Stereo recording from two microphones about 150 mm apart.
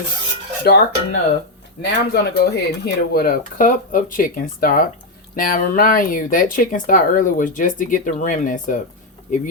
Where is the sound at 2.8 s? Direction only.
90° left.